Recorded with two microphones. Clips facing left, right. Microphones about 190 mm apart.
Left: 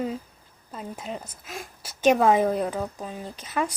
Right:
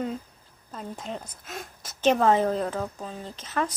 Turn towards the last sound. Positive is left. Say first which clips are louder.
# left 1 dB
turn(degrees=10)  # may be behind; listen again after turning